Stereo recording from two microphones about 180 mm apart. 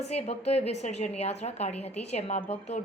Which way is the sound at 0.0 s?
35° left (ahead or behind).